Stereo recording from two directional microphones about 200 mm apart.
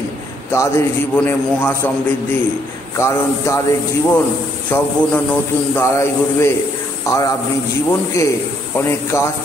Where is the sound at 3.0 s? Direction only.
15° left (ahead or behind).